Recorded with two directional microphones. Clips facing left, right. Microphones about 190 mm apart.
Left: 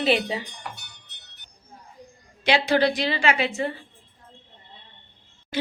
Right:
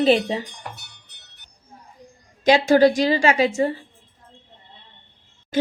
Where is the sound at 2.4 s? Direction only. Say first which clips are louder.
Right 6 dB; 40° right (ahead or behind).